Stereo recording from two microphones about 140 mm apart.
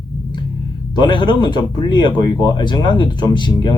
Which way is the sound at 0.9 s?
35° left (ahead or behind).